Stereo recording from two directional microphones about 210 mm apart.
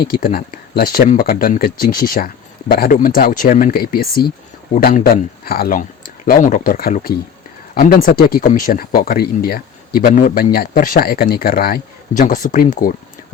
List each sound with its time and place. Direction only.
0.0 s speech: 45° left (ahead or behind)